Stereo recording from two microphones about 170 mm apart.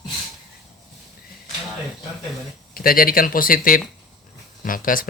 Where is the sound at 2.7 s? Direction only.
60° left (ahead or behind).